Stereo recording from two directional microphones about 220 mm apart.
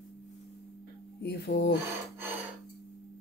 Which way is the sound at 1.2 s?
50° left (ahead or behind).